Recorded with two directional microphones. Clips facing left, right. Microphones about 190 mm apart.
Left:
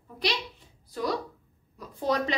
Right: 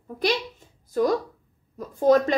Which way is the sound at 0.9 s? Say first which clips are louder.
Right 8 dB; 45° right (ahead or behind).